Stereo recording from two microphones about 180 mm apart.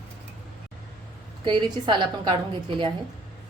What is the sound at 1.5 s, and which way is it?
Speech, 25° right (ahead or behind).